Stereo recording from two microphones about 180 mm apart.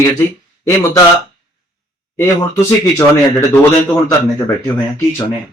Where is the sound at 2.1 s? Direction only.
15° left (ahead or behind).